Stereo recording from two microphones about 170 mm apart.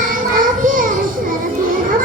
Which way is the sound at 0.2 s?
55° right (ahead or behind).